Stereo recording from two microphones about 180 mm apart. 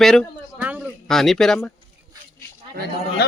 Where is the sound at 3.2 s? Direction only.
65° left (ahead or behind).